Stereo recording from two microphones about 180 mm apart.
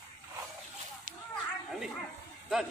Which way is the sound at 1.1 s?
50° right (ahead or behind).